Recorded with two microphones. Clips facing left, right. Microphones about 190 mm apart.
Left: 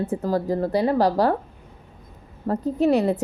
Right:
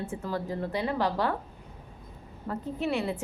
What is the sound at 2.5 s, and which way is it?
Speech, 40° left (ahead or behind).